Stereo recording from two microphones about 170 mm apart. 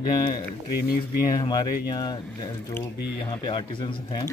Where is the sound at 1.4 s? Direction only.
25° left (ahead or behind).